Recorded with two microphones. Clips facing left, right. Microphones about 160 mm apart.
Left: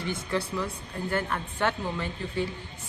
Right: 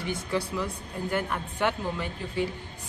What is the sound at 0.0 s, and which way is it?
Speech, 15° right (ahead or behind).